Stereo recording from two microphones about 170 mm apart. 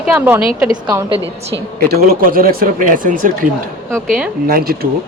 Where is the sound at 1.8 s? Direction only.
65° right (ahead or behind).